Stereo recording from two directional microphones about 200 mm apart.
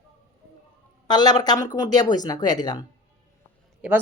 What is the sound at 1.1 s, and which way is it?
A woman's voice, 20° left (ahead or behind).